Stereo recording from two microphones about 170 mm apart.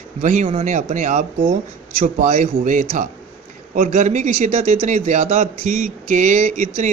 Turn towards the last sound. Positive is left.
turn(degrees=-45)  # may be behind; listen again after turning